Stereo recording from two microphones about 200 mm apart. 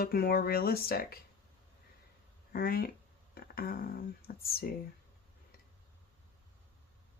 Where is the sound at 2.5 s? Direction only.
50° left (ahead or behind).